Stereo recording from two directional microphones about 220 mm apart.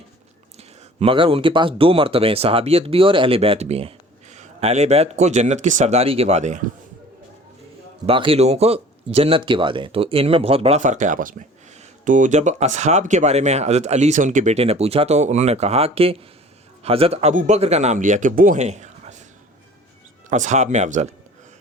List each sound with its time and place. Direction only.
0.9 s speech: 25° right (ahead or behind)
8.0 s speech: 25° right (ahead or behind)
20.3 s speech: 35° right (ahead or behind)